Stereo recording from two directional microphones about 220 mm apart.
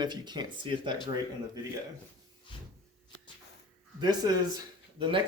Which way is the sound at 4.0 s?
20° right (ahead or behind).